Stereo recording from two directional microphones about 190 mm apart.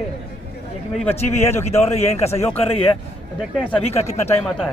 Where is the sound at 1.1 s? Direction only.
35° left (ahead or behind).